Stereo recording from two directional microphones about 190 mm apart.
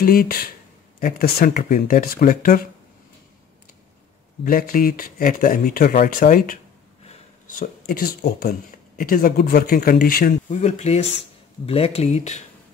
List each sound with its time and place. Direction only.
0.0 s speech: 50° left (ahead or behind)
4.5 s speech: 50° left (ahead or behind)
10.6 s speech: 35° left (ahead or behind)